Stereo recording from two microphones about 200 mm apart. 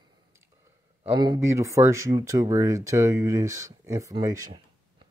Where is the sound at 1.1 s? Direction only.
20° right (ahead or behind).